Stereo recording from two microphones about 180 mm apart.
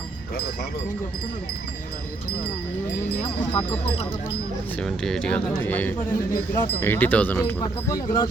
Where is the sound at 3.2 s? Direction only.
30° left (ahead or behind).